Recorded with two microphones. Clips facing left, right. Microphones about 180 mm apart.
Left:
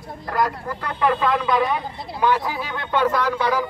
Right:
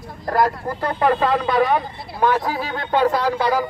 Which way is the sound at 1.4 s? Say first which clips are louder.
Right 3 dB; 45° right (ahead or behind).